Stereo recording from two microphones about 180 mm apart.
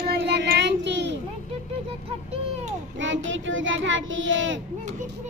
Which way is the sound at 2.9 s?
90° right.